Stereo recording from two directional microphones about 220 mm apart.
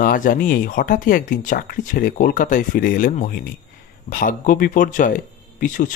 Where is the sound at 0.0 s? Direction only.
40° left (ahead or behind).